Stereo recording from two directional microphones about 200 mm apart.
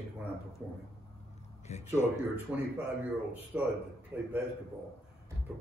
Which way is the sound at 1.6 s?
35° left (ahead or behind).